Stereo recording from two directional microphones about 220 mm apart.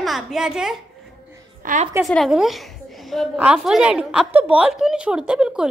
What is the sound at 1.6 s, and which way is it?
Speech, 35° right (ahead or behind).